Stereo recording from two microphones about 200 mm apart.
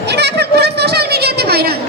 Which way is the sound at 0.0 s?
55° right (ahead or behind).